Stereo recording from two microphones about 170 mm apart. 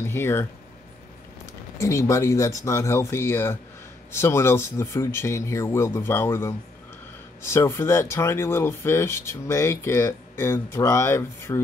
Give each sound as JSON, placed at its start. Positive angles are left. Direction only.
{"t": 0.0, "sound": "speech", "side_deg": 15}